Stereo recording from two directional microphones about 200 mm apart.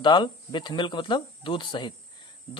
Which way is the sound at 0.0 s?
25° left (ahead or behind).